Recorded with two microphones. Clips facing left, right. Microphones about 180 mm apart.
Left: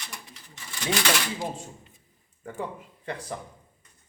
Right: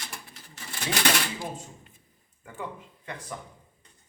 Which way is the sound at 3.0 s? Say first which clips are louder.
Left 4 dB; 35° left (ahead or behind).